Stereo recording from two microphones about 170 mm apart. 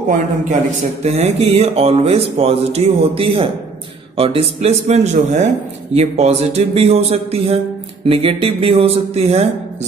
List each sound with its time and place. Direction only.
1.0 s speech: 40° right (ahead or behind)